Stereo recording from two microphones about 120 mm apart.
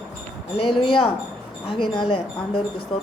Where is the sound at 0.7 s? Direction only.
50° left (ahead or behind).